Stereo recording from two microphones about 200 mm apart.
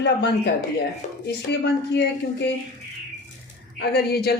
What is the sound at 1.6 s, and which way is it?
Speech, 55° left (ahead or behind).